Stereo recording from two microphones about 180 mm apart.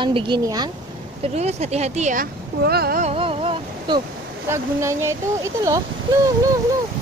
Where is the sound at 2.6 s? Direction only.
60° right (ahead or behind).